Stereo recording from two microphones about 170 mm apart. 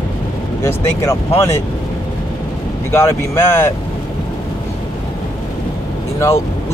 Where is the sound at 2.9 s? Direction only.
15° left (ahead or behind).